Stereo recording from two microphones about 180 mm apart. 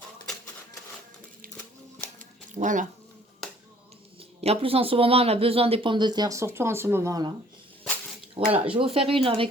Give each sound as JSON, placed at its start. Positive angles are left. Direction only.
{"t": 2.5, "sound": "speech", "side_deg": -45}
{"t": 4.2, "sound": "speech", "side_deg": -30}
{"t": 8.4, "sound": "speech", "side_deg": -30}